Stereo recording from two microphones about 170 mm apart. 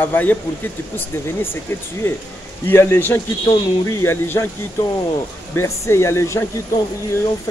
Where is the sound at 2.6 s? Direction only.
15° left (ahead or behind).